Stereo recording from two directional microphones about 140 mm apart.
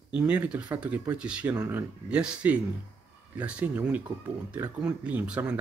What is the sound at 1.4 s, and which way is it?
Speech, 25° right (ahead or behind).